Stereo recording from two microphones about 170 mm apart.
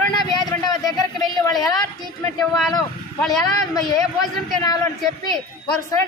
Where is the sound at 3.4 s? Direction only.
20° left (ahead or behind).